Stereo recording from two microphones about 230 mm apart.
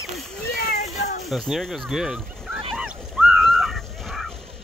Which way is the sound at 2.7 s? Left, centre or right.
Centre.